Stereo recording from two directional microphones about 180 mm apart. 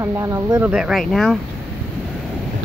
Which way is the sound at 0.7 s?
Centre (ahead or behind).